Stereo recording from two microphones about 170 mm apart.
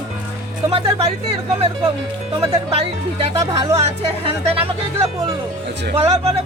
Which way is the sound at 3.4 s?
20° right (ahead or behind).